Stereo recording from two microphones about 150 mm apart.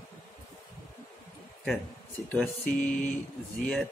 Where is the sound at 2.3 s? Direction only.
10° left (ahead or behind).